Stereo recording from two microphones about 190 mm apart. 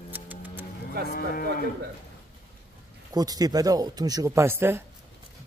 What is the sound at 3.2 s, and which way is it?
Speech, 20° right (ahead or behind).